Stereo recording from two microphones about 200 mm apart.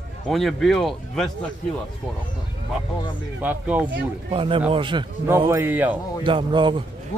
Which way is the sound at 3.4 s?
10° right (ahead or behind).